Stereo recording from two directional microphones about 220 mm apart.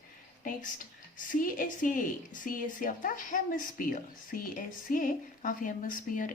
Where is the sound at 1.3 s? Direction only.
40° left (ahead or behind).